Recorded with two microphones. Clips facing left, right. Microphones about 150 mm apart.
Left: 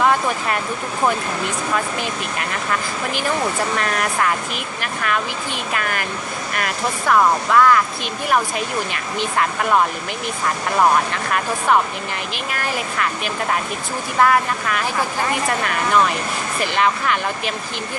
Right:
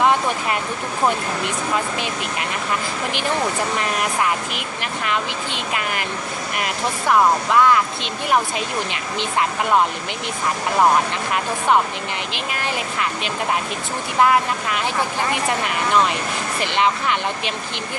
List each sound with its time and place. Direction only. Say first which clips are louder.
0.0 s a sound: even; 20° right (ahead or behind)
1.0 s speech: even; 20° right (ahead or behind)
3.8 s speech: left 1 dB; 20° right (ahead or behind)
11.1 s speech: left 1 dB; 20° right (ahead or behind)